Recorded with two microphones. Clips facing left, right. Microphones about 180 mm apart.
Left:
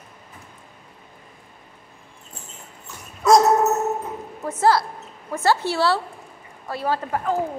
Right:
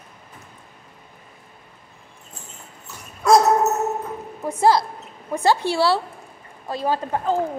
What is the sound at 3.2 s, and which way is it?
Dog, centre (ahead or behind).